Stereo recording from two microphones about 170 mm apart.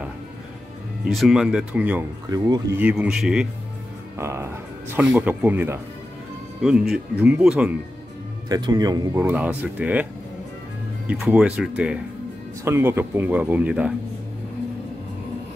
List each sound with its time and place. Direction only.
1.0 s speech: centre (ahead or behind)
2.2 s speech: 20° right (ahead or behind)
2.8 s speech: 5° right (ahead or behind)
4.2 s a man's voice: 15° right (ahead or behind)
6.9 s a man's voice: 5° right (ahead or behind)
8.5 s a man's voice: 25° right (ahead or behind); by 10.0 s 10° right (ahead or behind)
11.1 s a man's voice: 5° right (ahead or behind)